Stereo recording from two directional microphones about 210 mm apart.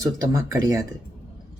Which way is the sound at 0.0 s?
15° right (ahead or behind).